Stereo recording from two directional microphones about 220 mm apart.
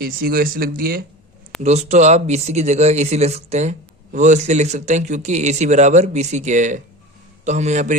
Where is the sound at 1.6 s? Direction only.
30° right (ahead or behind).